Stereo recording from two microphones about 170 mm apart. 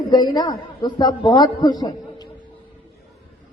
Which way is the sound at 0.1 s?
25° left (ahead or behind).